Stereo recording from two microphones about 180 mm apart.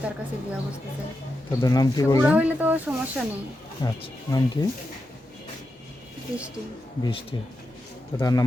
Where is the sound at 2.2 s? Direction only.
10° right (ahead or behind).